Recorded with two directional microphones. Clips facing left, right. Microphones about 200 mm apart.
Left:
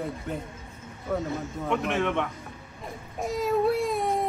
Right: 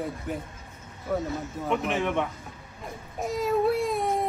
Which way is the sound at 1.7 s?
15° right (ahead or behind).